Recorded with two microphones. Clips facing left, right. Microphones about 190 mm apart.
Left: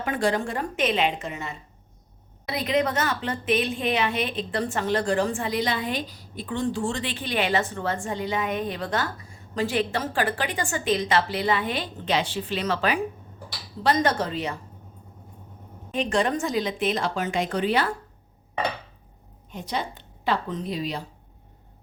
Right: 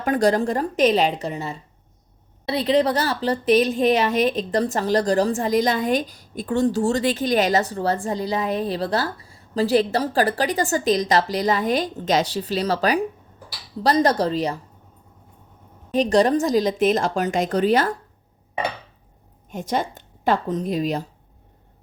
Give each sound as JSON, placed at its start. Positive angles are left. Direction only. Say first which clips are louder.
{"t": 0.0, "sound": "a woman's voice", "louder": "right 6 dB", "side_deg": -40}
{"t": 15.9, "sound": "a woman's voice", "louder": "right 7 dB", "side_deg": -35}
{"t": 19.5, "sound": "a woman's voice", "louder": "right 6 dB", "side_deg": -45}